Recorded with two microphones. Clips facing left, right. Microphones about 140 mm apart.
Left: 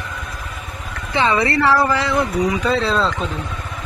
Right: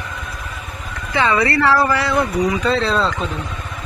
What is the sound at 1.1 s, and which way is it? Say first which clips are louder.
Speech: even; 25° left (ahead or behind).